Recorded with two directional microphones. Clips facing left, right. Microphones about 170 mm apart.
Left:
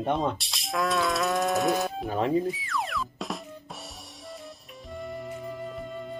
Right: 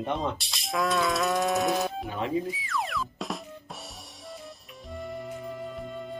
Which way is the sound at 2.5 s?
Centre (ahead or behind).